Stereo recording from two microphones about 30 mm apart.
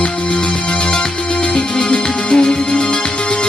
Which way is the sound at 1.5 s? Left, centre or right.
Left.